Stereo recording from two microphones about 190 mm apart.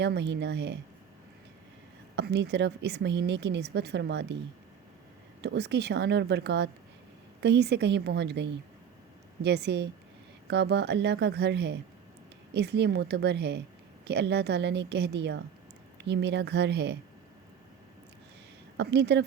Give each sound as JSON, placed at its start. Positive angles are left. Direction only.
{"t": 0.0, "sound": "a woman's voice", "side_deg": -65}
{"t": 2.1, "sound": "a woman's voice", "side_deg": -60}
{"t": 5.4, "sound": "a woman's voice", "side_deg": -65}
{"t": 18.8, "sound": "a woman's voice", "side_deg": -60}